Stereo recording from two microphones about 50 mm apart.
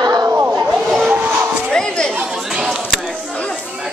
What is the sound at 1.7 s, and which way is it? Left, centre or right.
Chatter, centre.